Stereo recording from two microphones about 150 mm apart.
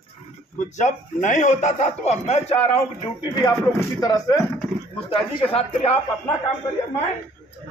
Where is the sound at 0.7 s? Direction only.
55° left (ahead or behind).